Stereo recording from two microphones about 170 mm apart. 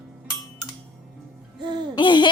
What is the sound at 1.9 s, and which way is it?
Speech, 25° left (ahead or behind).